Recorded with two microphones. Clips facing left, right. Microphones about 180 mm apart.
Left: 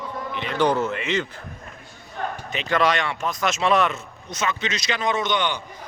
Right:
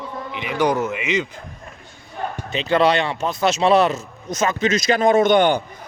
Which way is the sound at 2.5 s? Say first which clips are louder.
Right 5 dB; 30° right (ahead or behind).